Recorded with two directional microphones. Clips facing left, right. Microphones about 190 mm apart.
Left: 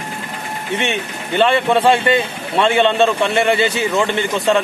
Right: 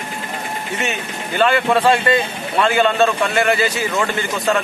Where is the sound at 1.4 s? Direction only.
25° left (ahead or behind).